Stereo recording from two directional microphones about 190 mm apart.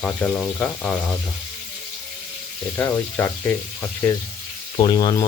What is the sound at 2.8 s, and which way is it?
Speech, 10° left (ahead or behind).